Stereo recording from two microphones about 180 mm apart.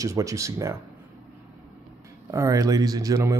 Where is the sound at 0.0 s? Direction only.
20° right (ahead or behind).